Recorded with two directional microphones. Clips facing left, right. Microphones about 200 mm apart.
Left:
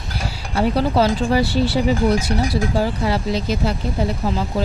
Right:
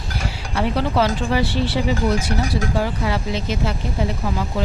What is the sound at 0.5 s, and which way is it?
Speech, 35° left (ahead or behind).